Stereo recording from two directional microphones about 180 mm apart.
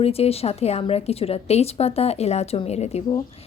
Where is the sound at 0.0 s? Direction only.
35° left (ahead or behind).